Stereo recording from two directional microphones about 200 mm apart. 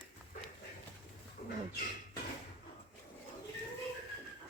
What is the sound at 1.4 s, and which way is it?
Bird, 35° left (ahead or behind).